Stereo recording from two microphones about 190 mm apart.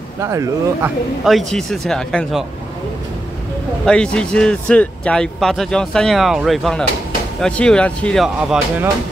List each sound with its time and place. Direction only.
0.2 s speech: 15° right (ahead or behind)
1.2 s speech: centre (ahead or behind)
3.8 s speech: 5° left (ahead or behind)